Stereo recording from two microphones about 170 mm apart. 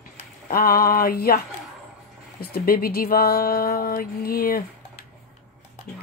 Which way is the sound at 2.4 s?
60° left (ahead or behind).